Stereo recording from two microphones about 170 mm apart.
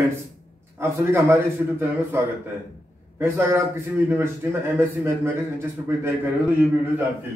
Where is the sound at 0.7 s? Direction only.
15° right (ahead or behind).